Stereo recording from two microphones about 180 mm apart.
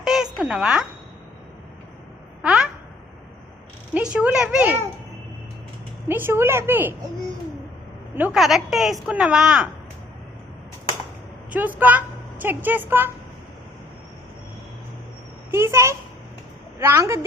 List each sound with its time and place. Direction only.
0.0 s a sound: centre (ahead or behind)
2.4 s a sound: 5° right (ahead or behind)
3.9 s a woman's voice: 5° right (ahead or behind)
6.1 s a woman's voice: 10° right (ahead or behind)
11.5 s a woman's voice: 10° right (ahead or behind)
15.5 s a woman's voice: 15° right (ahead or behind)